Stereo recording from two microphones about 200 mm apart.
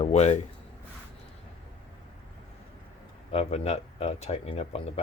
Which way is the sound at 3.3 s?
30° left (ahead or behind).